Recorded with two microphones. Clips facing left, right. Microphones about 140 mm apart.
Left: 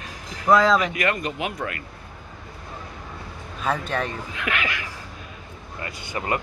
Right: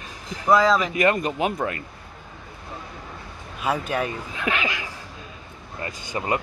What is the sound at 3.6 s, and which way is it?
Speech, 10° right (ahead or behind).